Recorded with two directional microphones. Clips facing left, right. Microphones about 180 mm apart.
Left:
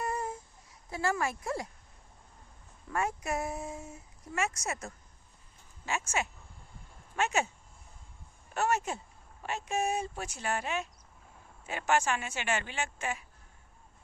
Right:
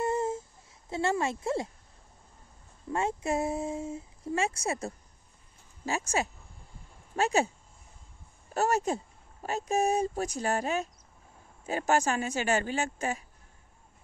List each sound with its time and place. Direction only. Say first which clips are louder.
0.0 s a sound: right 6 dB; 25° right (ahead or behind)
0.8 s speech: right 3 dB; 25° right (ahead or behind)
2.9 s speech: right 3 dB; 25° right (ahead or behind)
8.5 s speech: right 4 dB; 35° right (ahead or behind)